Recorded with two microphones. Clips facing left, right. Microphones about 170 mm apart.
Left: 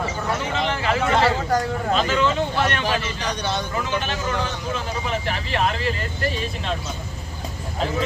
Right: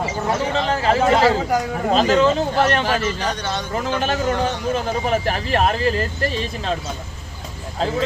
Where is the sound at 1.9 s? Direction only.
40° right (ahead or behind).